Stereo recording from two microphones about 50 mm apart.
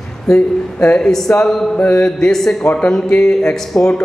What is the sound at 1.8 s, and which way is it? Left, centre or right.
Mantra, left.